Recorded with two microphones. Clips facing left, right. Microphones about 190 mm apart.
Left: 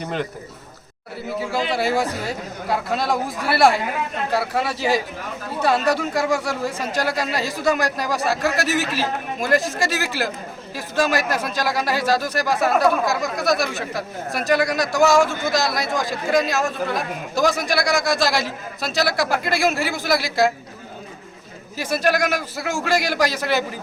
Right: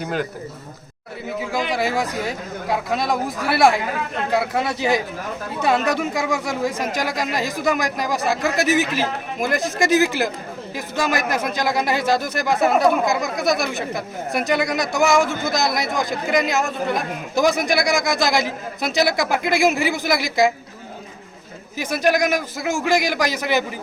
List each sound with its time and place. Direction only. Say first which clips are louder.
0.0 s speech: right 1 dB; 5° right (ahead or behind)
1.5 s a man's voice: left 1 dB; 15° right (ahead or behind)
21.8 s speech: right 1 dB; 15° right (ahead or behind)